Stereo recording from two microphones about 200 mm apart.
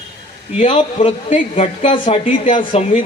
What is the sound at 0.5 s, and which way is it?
A man's voice, 30° left (ahead or behind).